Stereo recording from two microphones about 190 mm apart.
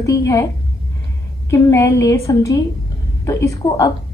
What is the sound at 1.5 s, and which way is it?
A woman's voice, 15° left (ahead or behind).